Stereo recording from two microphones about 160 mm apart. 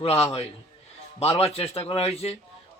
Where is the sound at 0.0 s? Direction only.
40° left (ahead or behind).